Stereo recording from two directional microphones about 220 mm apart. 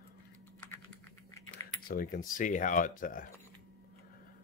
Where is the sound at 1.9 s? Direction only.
40° left (ahead or behind).